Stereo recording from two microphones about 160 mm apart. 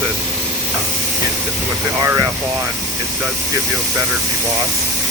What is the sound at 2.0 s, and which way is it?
Speech, 20° right (ahead or behind).